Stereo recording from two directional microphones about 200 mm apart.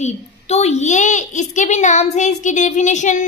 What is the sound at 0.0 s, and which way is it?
A child's voice, 35° left (ahead or behind).